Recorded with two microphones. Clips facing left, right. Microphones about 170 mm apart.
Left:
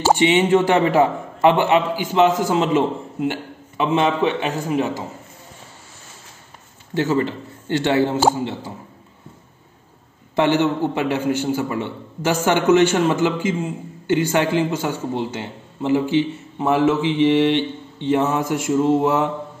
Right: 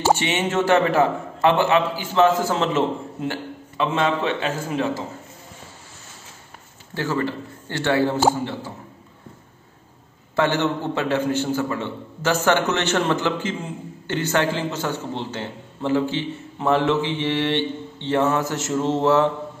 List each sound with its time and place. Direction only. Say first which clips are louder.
0.1 s a man's voice: left 10 dB; 15° left (ahead or behind)
6.9 s a man's voice: left 4 dB; 20° left (ahead or behind)
10.3 s a man's voice: left 3 dB; 15° left (ahead or behind)